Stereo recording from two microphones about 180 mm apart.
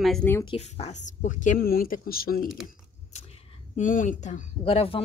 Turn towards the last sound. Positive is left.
turn(degrees=30)  # may be behind; listen again after turning